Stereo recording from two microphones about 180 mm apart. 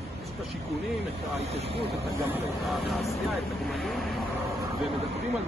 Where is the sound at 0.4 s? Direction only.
Centre (ahead or behind).